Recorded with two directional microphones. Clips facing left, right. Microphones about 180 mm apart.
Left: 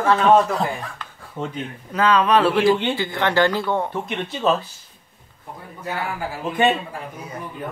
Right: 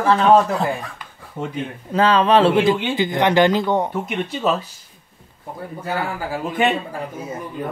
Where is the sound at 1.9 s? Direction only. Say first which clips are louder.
Right 2 dB; 30° right (ahead or behind); by 4.4 s 15° right (ahead or behind).